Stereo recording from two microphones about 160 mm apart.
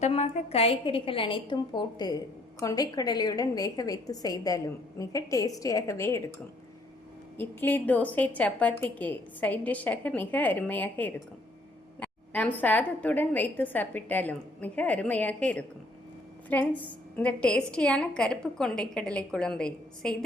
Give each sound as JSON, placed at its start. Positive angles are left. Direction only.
{"t": 0.0, "sound": "a woman's voice", "side_deg": 40}
{"t": 7.3, "sound": "a woman's voice", "side_deg": 10}